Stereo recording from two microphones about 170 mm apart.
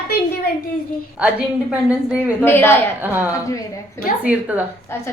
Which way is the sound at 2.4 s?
10° left (ahead or behind).